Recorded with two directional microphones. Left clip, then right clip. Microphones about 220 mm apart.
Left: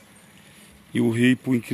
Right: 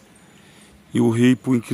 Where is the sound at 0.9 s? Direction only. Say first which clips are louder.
Right 3 dB; 10° right (ahead or behind).